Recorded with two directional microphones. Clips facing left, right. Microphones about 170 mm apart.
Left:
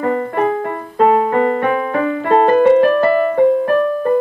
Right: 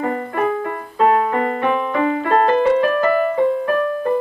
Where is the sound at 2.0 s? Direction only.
45° left (ahead or behind).